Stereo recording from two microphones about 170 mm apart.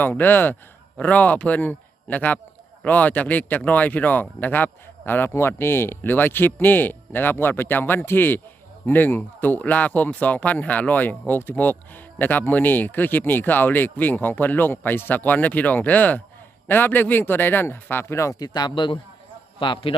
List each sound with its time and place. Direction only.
0.0 s a man's voice: 10° left (ahead or behind); by 19.9 s 30° left (ahead or behind)